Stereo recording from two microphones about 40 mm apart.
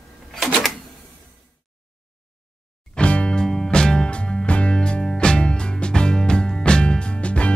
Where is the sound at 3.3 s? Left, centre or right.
Centre.